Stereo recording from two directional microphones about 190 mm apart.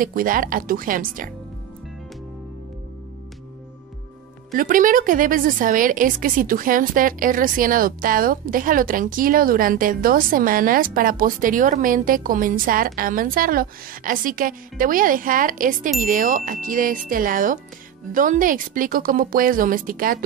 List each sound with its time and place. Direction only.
0.0 s a woman's voice: 50° right (ahead or behind)
4.6 s a woman's voice: 45° right (ahead or behind)